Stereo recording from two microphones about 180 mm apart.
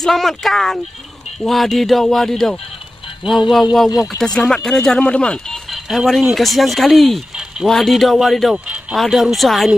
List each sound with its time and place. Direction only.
0.0 s speech: centre (ahead or behind)
3.9 s speech: 20° left (ahead or behind)
4.2 s speech: 5° left (ahead or behind)